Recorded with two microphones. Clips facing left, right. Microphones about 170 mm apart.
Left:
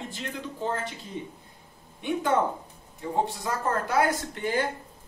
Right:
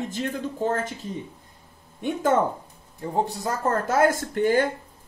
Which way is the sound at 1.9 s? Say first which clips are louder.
Right 3 dB; 45° right (ahead or behind).